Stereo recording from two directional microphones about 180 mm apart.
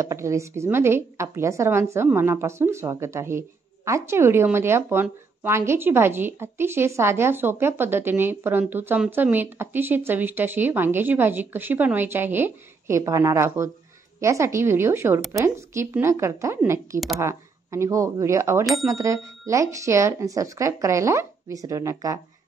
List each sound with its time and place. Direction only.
0.0 s a woman's voice: 15° right (ahead or behind)